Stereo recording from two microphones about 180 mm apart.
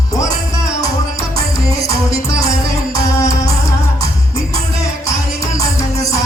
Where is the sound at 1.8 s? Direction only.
15° left (ahead or behind).